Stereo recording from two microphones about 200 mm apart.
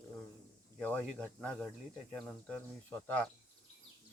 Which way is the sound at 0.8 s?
5° left (ahead or behind).